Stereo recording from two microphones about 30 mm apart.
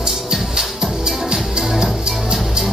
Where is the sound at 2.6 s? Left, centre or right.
Right.